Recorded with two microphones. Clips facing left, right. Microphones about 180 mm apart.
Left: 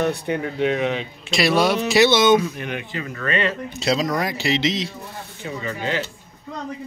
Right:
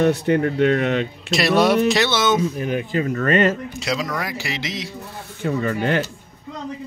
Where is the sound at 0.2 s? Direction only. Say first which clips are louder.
Right 5 dB; 65° right (ahead or behind).